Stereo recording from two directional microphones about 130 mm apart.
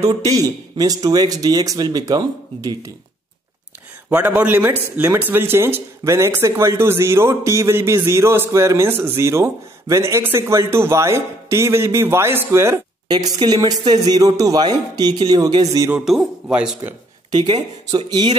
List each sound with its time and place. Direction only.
0.1 s a man's voice: 25° right (ahead or behind)
4.1 s a man's voice: 15° right (ahead or behind)
13.1 s speech: 30° right (ahead or behind)
16.1 s speech: 5° right (ahead or behind)
17.3 s speech: 35° right (ahead or behind)